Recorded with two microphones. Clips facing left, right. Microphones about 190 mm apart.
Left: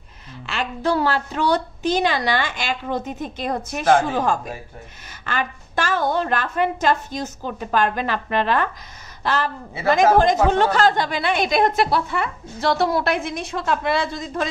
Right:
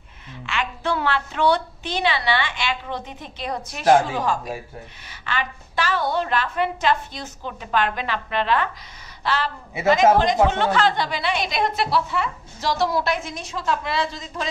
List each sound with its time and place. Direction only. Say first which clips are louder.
0.5 s a woman's voice: left 3 dB; 40° left (ahead or behind)